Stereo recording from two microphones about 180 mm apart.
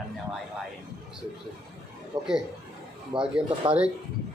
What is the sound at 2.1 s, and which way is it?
Speech, 25° right (ahead or behind).